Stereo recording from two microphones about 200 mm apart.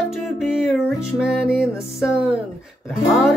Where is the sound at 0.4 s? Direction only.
Centre (ahead or behind).